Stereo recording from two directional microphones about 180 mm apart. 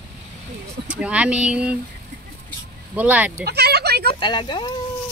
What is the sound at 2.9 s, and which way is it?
Speech, 10° right (ahead or behind).